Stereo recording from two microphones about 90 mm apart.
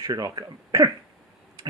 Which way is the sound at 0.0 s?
40° right (ahead or behind).